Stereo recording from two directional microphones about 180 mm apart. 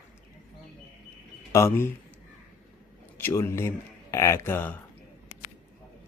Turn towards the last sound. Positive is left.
turn(degrees=10)  # may be behind; listen again after turning